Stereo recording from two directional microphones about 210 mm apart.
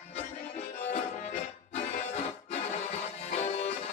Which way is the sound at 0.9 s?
35° left (ahead or behind).